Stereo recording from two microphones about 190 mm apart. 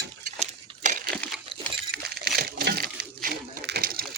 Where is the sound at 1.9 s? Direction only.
55° right (ahead or behind).